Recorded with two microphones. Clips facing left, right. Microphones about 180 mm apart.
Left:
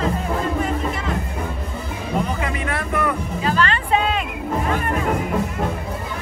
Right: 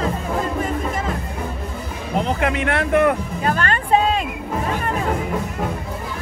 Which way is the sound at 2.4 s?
70° right (ahead or behind).